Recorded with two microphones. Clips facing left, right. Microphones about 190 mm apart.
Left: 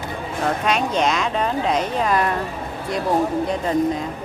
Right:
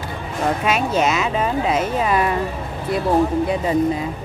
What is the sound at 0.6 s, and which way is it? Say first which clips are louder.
Speech: right 1 dB; 5° right (ahead or behind).